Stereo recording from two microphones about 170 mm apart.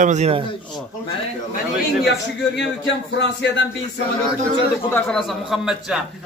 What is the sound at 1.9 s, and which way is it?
Speech, 75° left (ahead or behind).